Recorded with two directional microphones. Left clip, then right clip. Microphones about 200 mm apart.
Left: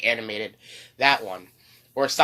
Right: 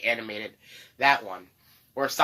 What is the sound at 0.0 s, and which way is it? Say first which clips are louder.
Speech: left 4 dB; 40° left (ahead or behind).